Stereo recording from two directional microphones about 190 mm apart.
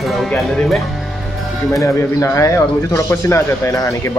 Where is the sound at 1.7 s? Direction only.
15° left (ahead or behind).